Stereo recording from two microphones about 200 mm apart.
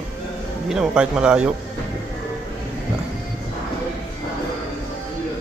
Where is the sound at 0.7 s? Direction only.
5° right (ahead or behind).